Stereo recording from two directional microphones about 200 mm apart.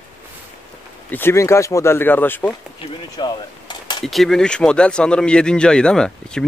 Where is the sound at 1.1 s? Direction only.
10° left (ahead or behind).